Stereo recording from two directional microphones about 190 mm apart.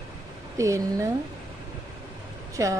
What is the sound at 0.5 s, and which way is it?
Speech, 15° right (ahead or behind).